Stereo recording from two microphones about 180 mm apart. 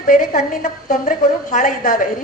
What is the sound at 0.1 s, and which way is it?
A woman's voice, 50° left (ahead or behind).